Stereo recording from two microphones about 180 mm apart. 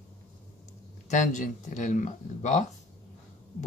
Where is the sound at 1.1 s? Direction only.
45° left (ahead or behind).